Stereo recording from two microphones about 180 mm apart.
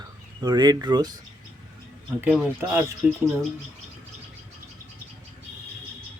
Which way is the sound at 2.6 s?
10° right (ahead or behind).